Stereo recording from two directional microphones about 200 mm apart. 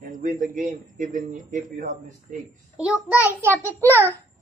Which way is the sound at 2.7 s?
5° right (ahead or behind).